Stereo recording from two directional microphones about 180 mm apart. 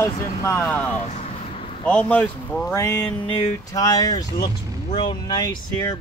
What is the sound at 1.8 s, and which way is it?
Speech, 10° left (ahead or behind).